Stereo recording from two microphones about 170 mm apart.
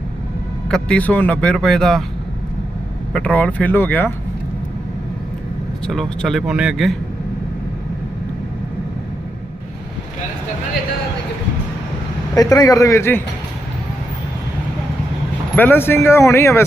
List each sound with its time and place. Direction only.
0.7 s speech: 5° left (ahead or behind)
3.1 s speech: 5° left (ahead or behind)
5.8 s speech: 5° left (ahead or behind)
12.3 s speech: 20° left (ahead or behind)
15.5 s speech: 10° left (ahead or behind)